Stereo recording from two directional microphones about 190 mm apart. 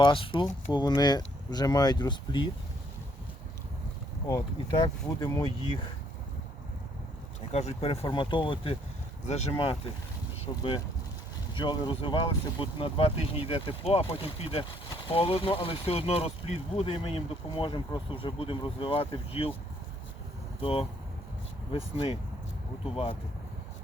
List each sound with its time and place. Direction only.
0.0 s speech: 25° left (ahead or behind)
5.0 s speech: 20° left (ahead or behind)
7.5 s speech: 30° left (ahead or behind)
20.6 s speech: 30° left (ahead or behind)